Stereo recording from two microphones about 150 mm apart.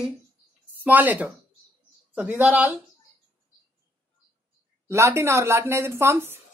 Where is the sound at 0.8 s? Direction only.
10° right (ahead or behind).